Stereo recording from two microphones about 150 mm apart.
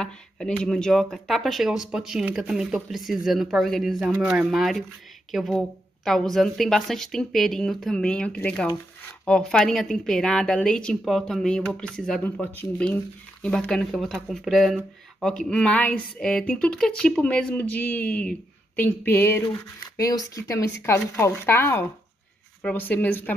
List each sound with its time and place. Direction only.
0.0 s a woman's voice: 5° left (ahead or behind)